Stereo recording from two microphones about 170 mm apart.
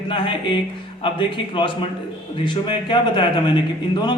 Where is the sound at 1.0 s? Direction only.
30° left (ahead or behind).